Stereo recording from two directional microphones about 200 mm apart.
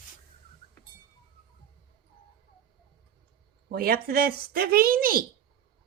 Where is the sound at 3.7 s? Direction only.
50° right (ahead or behind).